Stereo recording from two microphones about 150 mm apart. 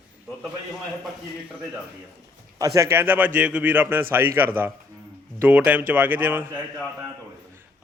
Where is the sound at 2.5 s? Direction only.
20° right (ahead or behind).